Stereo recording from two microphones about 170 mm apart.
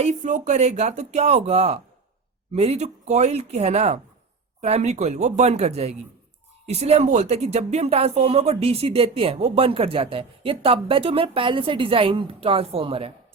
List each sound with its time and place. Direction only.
0.0 s speech: 45° right (ahead or behind)